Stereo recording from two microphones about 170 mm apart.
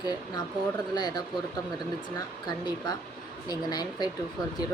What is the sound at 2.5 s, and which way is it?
A woman's voice, 25° left (ahead or behind).